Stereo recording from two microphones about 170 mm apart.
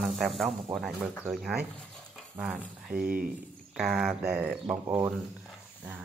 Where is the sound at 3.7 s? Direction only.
5° right (ahead or behind).